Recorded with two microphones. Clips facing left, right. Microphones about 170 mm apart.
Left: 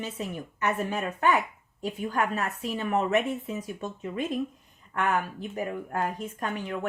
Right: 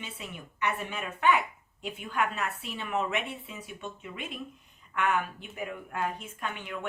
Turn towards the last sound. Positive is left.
turn(degrees=35)  # may be behind; listen again after turning